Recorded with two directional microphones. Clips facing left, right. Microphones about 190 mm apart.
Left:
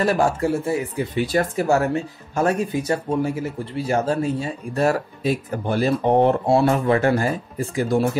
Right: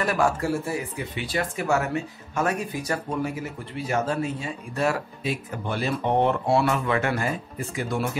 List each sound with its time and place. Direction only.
0.0 s speech: 30° left (ahead or behind)
1.1 s speech: 40° left (ahead or behind)